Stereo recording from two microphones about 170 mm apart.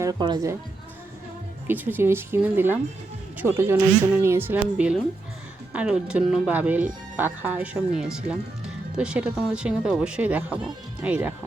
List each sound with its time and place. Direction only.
0.0 s speech: 25° right (ahead or behind)
1.6 s speech: 10° right (ahead or behind)